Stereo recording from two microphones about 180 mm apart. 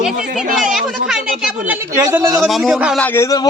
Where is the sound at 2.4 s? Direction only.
Centre (ahead or behind).